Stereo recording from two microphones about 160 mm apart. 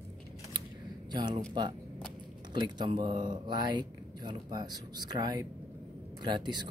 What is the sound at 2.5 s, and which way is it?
Speech, 30° right (ahead or behind).